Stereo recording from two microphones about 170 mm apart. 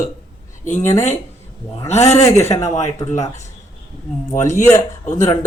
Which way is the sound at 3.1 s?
45° left (ahead or behind).